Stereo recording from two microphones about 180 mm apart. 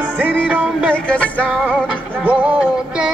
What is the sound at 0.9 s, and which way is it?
Music, 5° left (ahead or behind).